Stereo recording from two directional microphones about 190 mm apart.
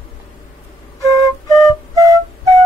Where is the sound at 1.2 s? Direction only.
20° left (ahead or behind).